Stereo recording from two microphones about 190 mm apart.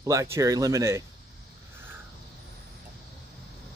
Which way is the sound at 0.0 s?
15° right (ahead or behind).